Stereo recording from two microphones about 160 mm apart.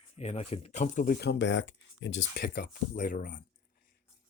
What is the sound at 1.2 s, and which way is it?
Speech, 90° left.